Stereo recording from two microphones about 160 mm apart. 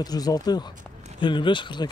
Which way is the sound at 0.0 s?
25° left (ahead or behind).